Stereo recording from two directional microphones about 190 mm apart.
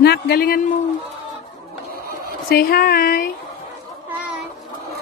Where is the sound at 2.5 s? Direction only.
55° left (ahead or behind).